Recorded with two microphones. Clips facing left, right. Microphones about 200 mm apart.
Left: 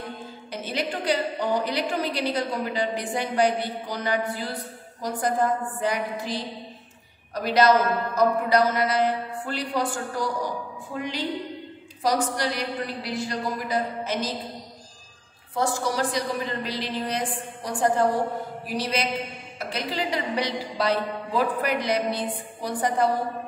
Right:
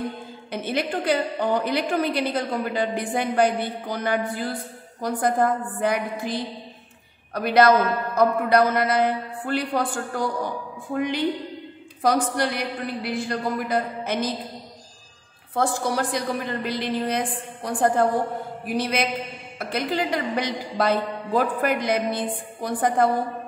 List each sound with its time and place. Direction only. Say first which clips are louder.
0.5 s a woman's voice: right 3 dB; 55° right (ahead or behind)
15.5 s a man's voice: right 2 dB; 55° right (ahead or behind)